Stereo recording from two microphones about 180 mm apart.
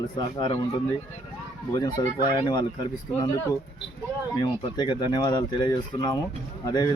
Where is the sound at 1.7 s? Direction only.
20° left (ahead or behind).